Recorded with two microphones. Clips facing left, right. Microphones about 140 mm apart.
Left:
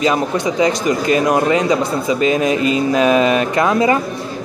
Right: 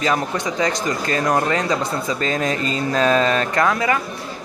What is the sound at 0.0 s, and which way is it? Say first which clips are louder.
A man's voice: left 5 dB; 15° left (ahead or behind).